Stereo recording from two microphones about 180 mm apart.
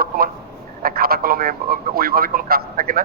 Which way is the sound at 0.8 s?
55° right (ahead or behind).